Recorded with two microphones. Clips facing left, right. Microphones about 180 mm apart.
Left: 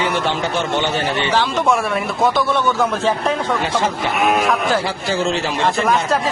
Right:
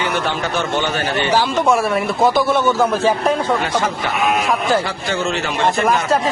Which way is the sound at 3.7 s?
25° left (ahead or behind).